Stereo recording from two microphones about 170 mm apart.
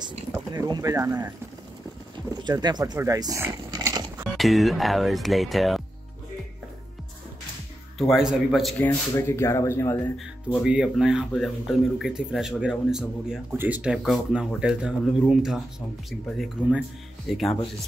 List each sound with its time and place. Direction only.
0.3 s speech: 20° right (ahead or behind)
2.4 s speech: 25° right (ahead or behind)
4.2 s speech: centre (ahead or behind)
8.1 s speech: centre (ahead or behind)
8.7 s speech: 10° left (ahead or behind)
10.1 s speech: centre (ahead or behind)